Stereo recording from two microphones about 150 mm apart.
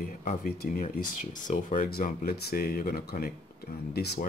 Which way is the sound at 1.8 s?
80° left.